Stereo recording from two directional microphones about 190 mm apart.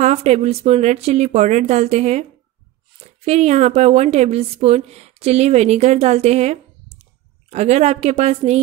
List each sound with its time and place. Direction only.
0.0 s a woman's voice: 35° right (ahead or behind)
3.3 s a woman's voice: 35° right (ahead or behind)